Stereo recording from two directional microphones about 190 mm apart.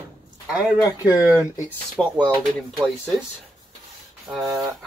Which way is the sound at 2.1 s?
5° right (ahead or behind).